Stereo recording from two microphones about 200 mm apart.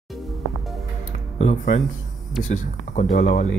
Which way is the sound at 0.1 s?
Centre (ahead or behind).